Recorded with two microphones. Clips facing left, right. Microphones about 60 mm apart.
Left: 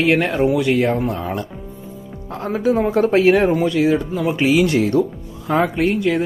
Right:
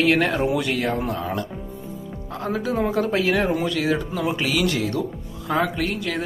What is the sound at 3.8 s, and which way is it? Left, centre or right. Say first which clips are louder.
Speech: left 5 dB; centre.